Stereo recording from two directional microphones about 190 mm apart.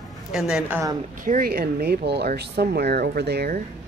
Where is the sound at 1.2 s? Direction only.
50° right (ahead or behind).